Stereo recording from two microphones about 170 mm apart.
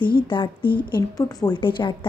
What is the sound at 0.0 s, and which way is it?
A woman's voice, 30° left (ahead or behind).